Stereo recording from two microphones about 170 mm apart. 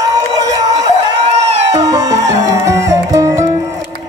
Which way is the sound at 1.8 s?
20° right (ahead or behind).